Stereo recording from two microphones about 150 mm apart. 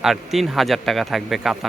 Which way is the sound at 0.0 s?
Centre (ahead or behind).